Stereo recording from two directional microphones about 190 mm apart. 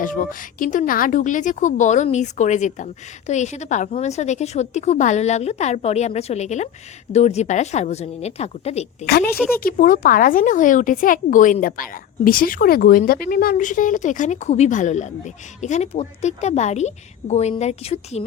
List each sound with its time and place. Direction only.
0.0 s a woman's voice: 45° left (ahead or behind)
9.0 s a woman's voice: 55° left (ahead or behind); by 18.2 s 35° left (ahead or behind)